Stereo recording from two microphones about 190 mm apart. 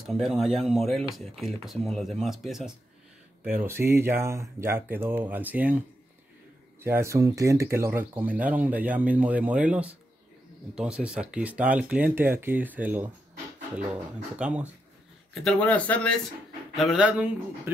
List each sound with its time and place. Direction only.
0.0 s speech: centre (ahead or behind)
6.8 s speech: 15° right (ahead or behind)
15.4 s speech: 10° left (ahead or behind)